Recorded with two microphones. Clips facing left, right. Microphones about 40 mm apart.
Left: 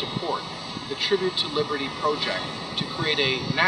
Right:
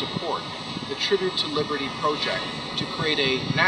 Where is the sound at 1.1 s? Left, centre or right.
Right.